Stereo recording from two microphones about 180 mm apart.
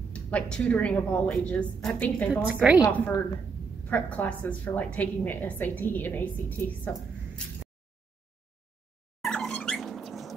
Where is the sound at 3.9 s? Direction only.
10° left (ahead or behind).